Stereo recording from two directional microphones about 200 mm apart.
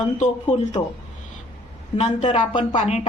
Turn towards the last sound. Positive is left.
turn(degrees=35)  # may be behind; listen again after turning